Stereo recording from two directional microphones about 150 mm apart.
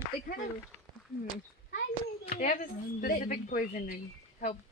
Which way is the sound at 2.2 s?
55° left (ahead or behind).